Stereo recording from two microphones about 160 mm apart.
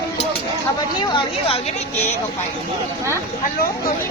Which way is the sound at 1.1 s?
35° left (ahead or behind).